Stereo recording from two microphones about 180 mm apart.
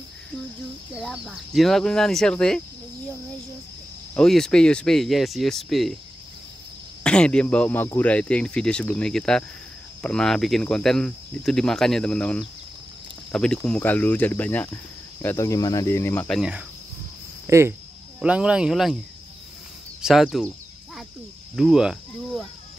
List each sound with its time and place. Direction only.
0.9 s speech: centre (ahead or behind)
4.1 s speech: 5° left (ahead or behind)
7.0 s speech: 5° left (ahead or behind)
16.3 s speech: centre (ahead or behind)
17.5 s speech: 15° right (ahead or behind)
20.0 s a sound: centre (ahead or behind)
21.5 s speech: centre (ahead or behind)